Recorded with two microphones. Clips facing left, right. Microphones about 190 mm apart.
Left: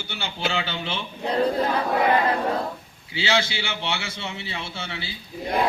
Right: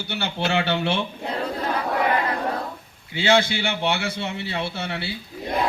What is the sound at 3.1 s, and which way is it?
A man's voice, 55° right (ahead or behind).